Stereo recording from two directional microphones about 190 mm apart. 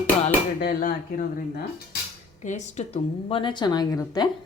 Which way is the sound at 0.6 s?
50° left (ahead or behind).